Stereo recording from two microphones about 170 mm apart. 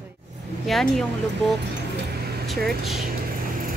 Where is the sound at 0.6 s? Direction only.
Centre (ahead or behind).